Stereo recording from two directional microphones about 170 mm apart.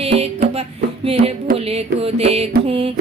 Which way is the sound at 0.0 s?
35° right (ahead or behind).